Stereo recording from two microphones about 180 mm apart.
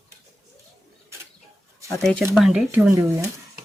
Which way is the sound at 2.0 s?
Centre (ahead or behind).